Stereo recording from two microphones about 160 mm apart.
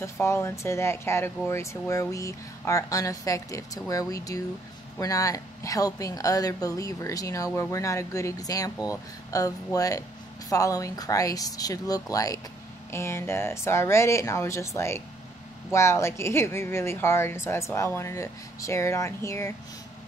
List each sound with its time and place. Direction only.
0.0 s speech: 15° left (ahead or behind)
15.7 s speech: 15° left (ahead or behind)